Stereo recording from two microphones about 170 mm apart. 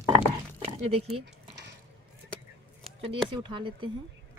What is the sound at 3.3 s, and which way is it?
Speech, 30° right (ahead or behind).